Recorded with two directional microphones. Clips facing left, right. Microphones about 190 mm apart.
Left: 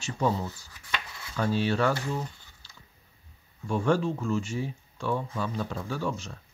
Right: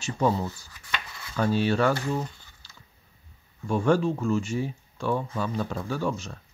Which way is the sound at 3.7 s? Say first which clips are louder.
Right 3 dB; 50° right (ahead or behind).